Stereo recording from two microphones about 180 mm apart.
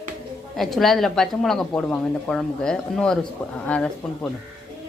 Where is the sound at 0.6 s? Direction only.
Centre (ahead or behind).